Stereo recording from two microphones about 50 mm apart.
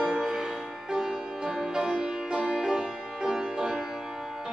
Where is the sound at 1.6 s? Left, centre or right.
Centre.